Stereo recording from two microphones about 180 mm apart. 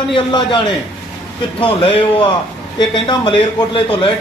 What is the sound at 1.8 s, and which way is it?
A man's voice, 25° left (ahead or behind).